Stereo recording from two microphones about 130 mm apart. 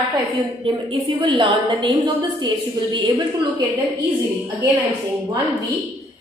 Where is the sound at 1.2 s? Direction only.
40° right (ahead or behind).